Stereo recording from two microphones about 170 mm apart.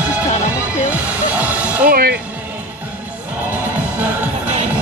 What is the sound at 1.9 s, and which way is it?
Music, 65° right (ahead or behind).